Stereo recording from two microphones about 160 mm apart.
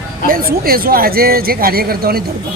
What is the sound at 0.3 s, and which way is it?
A woman's voice, 65° right (ahead or behind).